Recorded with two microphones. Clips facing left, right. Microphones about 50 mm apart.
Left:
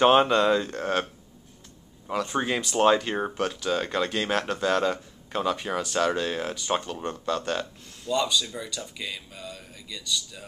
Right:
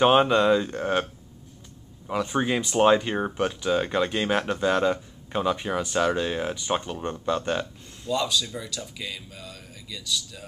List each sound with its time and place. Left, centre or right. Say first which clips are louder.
0.0 s speech: even; centre
2.1 s speech: right 2 dB; centre
8.1 s speech: even; centre